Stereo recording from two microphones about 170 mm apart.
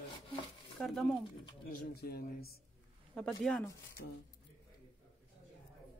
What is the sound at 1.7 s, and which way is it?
Speech, 65° left (ahead or behind).